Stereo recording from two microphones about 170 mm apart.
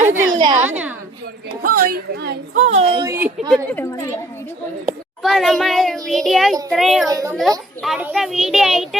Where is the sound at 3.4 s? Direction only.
Centre (ahead or behind).